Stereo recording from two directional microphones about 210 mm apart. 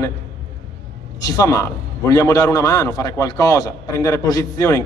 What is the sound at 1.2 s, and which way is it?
A man's voice, 15° left (ahead or behind).